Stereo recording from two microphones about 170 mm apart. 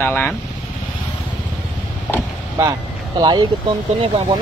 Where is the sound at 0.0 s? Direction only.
15° left (ahead or behind).